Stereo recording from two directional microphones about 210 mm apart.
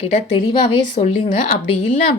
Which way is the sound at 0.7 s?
35° left (ahead or behind).